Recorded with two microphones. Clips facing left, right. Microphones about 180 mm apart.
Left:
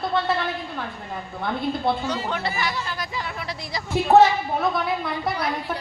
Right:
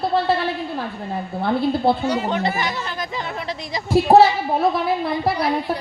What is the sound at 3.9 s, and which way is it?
A woman's voice, 35° right (ahead or behind).